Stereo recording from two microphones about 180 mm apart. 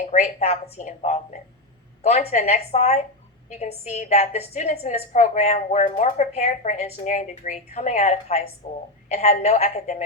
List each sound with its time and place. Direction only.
0.0 s a woman's voice: 40° left (ahead or behind)